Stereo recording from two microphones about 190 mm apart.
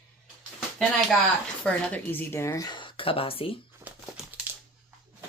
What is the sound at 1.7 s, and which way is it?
Speech, 10° left (ahead or behind).